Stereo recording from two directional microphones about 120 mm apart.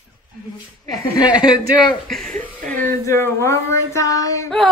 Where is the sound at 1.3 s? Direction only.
35° left (ahead or behind).